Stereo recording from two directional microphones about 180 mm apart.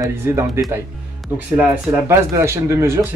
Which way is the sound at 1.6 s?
15° right (ahead or behind).